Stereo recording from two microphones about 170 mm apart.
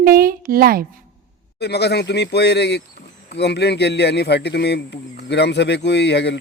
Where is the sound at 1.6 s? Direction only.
75° left (ahead or behind).